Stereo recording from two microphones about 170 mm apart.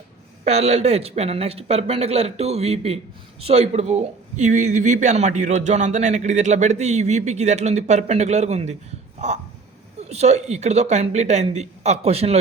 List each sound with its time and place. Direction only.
0.4 s a man's voice: 40° right (ahead or behind)
9.1 s a sound: 40° right (ahead or behind)
10.0 s speech: 40° right (ahead or behind)